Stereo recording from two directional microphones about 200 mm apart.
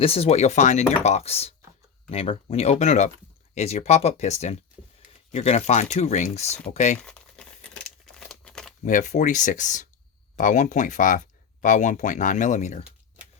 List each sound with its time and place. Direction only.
0.0 s speech: 30° left (ahead or behind)
7.0 s crumpling: 5° left (ahead or behind)
8.8 s speech: 40° left (ahead or behind)